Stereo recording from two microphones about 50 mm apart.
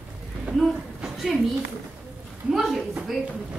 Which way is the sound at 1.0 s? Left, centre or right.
Centre.